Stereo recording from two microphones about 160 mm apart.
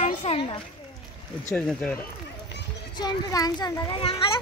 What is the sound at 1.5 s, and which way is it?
Speech, 5° left (ahead or behind).